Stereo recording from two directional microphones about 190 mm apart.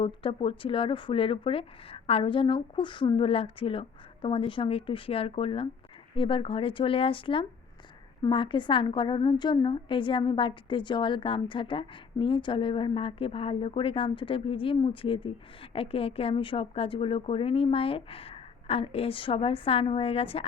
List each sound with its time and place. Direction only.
0.0 s a woman's voice: 30° left (ahead or behind)